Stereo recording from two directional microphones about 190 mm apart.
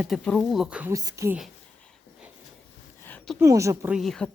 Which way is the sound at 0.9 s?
20° right (ahead or behind).